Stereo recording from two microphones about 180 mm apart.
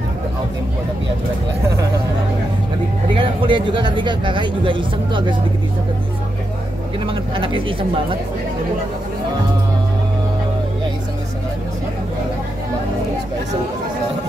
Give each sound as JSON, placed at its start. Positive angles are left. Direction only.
{"t": 3.2, "sound": "speech", "side_deg": -25}
{"t": 7.1, "sound": "speech", "side_deg": -30}